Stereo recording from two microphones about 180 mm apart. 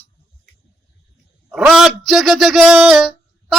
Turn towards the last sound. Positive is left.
turn(degrees=0)  # may be behind; listen again after turning